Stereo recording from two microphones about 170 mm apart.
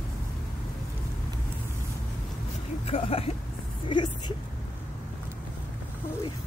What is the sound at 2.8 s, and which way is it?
A woman's voice, 35° left (ahead or behind).